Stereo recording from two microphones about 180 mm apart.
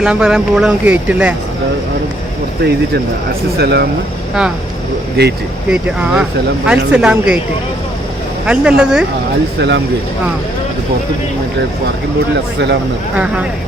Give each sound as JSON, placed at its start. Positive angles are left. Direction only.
{"t": 0.0, "sound": "speech", "side_deg": -5}
{"t": 3.6, "sound": "speech", "side_deg": -65}
{"t": 5.2, "sound": "speech", "side_deg": -65}
{"t": 5.7, "sound": "speech", "side_deg": -5}
{"t": 8.4, "sound": "speech", "side_deg": -5}
{"t": 9.6, "sound": "speech", "side_deg": -70}
{"t": 12.5, "sound": "speech", "side_deg": -70}
{"t": 13.1, "sound": "speech", "side_deg": -5}